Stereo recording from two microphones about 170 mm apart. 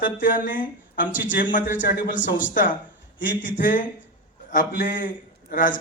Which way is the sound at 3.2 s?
50° left (ahead or behind).